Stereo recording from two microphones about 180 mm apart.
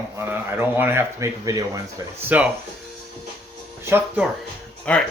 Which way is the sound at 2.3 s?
10° right (ahead or behind).